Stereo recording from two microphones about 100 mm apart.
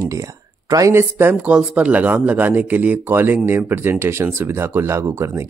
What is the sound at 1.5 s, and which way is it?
Speech, 10° right (ahead or behind).